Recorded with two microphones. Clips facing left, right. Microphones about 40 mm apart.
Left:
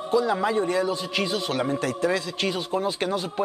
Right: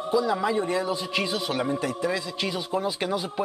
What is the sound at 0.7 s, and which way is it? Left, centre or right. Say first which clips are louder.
A man's voice: left 2 dB; centre.